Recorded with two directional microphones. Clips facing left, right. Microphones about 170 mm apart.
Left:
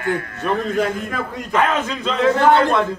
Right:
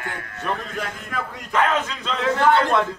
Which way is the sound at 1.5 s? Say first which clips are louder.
Left 2 dB; 10° left (ahead or behind).